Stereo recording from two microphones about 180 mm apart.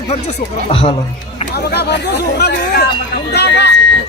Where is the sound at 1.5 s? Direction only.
65° left (ahead or behind).